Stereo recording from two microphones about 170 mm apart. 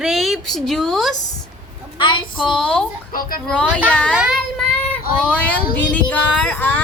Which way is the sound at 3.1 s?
60° left (ahead or behind).